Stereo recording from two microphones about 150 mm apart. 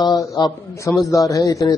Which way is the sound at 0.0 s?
25° left (ahead or behind).